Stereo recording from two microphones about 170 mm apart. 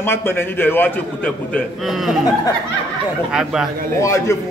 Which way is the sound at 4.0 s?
15° left (ahead or behind).